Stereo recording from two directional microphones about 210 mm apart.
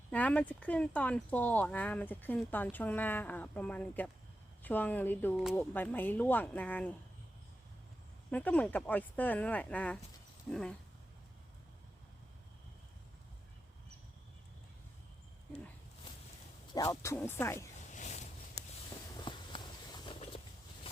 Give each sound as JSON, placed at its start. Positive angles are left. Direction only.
{"t": 0.1, "sound": "speech", "side_deg": 5}
{"t": 5.4, "sound": "speech", "side_deg": 0}
{"t": 8.3, "sound": "speech", "side_deg": 5}
{"t": 16.7, "sound": "speech", "side_deg": 15}
{"t": 17.9, "sound": "a sound", "side_deg": 35}
{"t": 18.6, "sound": "a sound", "side_deg": 15}
{"t": 19.1, "sound": "walk", "side_deg": 20}